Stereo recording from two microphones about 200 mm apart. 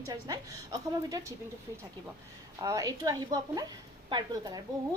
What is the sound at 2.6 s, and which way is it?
A woman's voice, 15° right (ahead or behind).